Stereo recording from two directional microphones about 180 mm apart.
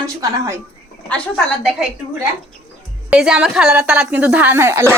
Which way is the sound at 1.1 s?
5° left (ahead or behind).